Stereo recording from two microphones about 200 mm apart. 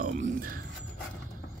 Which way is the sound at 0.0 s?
45° right (ahead or behind).